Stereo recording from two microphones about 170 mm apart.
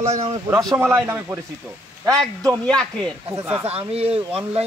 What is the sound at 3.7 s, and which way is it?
Speech, 35° right (ahead or behind).